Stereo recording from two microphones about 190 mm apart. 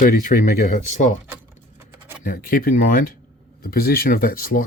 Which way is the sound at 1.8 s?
10° right (ahead or behind).